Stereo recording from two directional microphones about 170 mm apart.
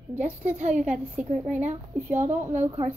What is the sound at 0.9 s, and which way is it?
A child's voice, 5° right (ahead or behind).